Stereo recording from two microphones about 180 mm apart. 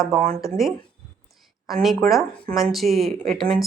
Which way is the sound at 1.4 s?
Centre (ahead or behind).